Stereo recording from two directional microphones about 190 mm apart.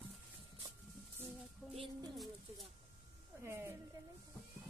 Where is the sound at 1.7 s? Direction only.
25° right (ahead or behind).